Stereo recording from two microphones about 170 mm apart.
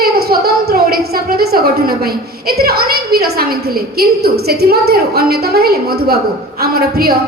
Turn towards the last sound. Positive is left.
turn(degrees=-65)  # may be behind; listen again after turning